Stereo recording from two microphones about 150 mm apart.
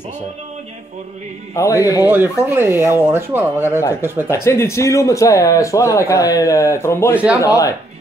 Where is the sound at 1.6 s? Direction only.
20° left (ahead or behind).